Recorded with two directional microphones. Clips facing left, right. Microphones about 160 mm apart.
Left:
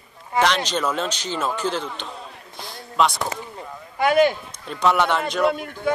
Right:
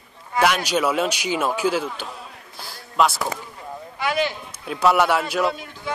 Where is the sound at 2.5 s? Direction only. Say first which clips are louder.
Right 1 dB; 5° right (ahead or behind).